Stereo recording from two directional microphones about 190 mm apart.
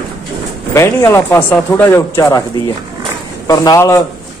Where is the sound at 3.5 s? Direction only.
20° left (ahead or behind).